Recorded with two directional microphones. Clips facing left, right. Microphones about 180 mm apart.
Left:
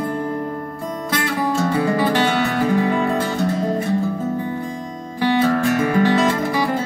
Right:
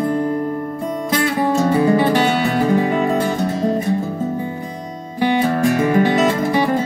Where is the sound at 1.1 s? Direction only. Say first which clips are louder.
Right 4 dB; 15° right (ahead or behind).